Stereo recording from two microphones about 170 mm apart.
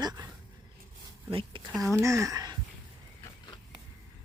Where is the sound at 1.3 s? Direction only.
30° right (ahead or behind).